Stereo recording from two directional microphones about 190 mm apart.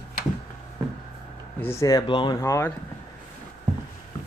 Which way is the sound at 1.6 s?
15° left (ahead or behind).